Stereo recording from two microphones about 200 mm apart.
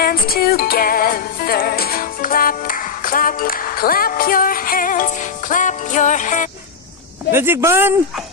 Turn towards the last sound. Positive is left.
turn(degrees=-10)  # may be behind; listen again after turning